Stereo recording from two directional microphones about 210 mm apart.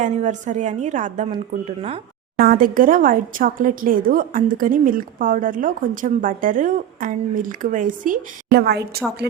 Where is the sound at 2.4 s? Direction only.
40° right (ahead or behind).